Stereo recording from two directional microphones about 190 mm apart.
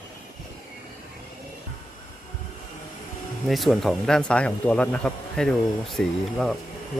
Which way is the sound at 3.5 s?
Centre (ahead or behind).